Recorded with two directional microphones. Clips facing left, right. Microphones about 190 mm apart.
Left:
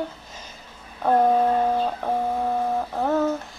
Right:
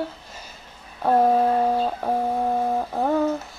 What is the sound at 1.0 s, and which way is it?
Speech, 5° right (ahead or behind).